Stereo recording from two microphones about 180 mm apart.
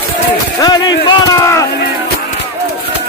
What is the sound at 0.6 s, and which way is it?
Speech, 20° left (ahead or behind).